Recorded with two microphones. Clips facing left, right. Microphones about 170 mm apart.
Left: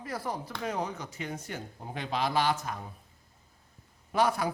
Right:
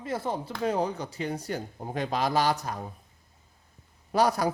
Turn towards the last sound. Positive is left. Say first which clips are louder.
# right 3 dB
turn(degrees=-40)  # may be behind; listen again after turning